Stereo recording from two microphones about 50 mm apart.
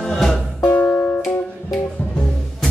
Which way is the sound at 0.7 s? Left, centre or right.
Left.